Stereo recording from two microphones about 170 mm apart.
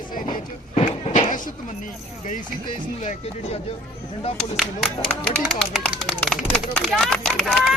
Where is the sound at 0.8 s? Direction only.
45° left (ahead or behind).